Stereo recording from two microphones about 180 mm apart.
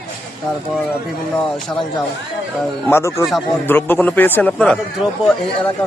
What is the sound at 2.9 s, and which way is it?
A man's voice, 15° left (ahead or behind).